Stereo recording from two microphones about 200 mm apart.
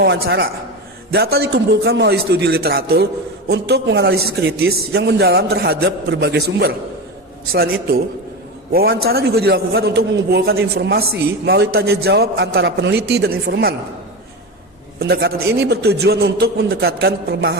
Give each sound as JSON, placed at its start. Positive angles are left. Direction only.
{"t": 0.0, "sound": "a man's voice", "side_deg": -55}
{"t": 14.9, "sound": "a man's voice", "side_deg": -55}